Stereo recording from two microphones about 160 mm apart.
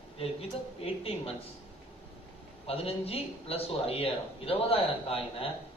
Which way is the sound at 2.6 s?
40° left (ahead or behind).